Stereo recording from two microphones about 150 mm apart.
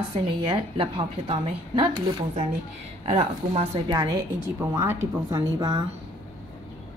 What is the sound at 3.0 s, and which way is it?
Speech, 45° right (ahead or behind).